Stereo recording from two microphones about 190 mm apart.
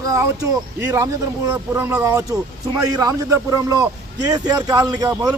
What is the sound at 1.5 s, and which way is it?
A man's voice, 10° right (ahead or behind).